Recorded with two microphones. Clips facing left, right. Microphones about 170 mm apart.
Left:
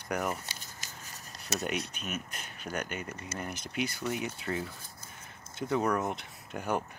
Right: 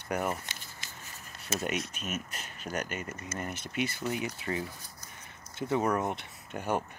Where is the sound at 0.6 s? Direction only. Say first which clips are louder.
Even; 40° left (ahead or behind).